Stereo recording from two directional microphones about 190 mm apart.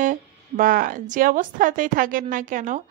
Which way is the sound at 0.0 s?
45° right (ahead or behind).